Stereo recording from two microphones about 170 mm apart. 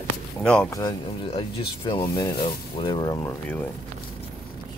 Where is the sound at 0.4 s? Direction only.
5° left (ahead or behind).